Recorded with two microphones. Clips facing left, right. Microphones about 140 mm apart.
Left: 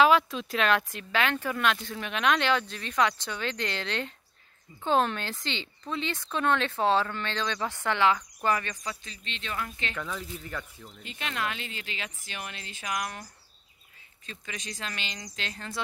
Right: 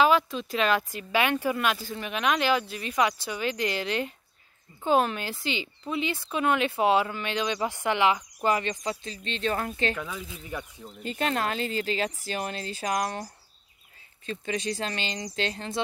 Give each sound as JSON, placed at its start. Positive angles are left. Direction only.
{"t": 0.0, "sound": "speech", "side_deg": 0}
{"t": 9.9, "sound": "speech", "side_deg": -10}
{"t": 11.1, "sound": "speech", "side_deg": -40}